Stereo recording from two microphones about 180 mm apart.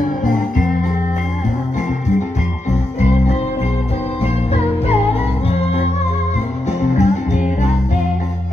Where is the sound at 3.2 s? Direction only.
35° left (ahead or behind).